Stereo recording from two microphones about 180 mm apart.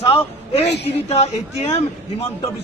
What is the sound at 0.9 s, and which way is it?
Speech, 35° left (ahead or behind).